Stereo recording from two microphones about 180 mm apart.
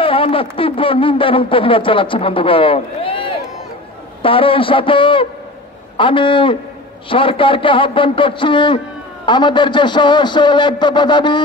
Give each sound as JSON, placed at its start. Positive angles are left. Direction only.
{"t": 0.0, "sound": "a man's voice", "side_deg": 30}